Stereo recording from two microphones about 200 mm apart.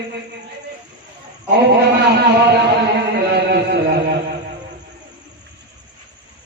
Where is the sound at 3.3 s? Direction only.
55° right (ahead or behind).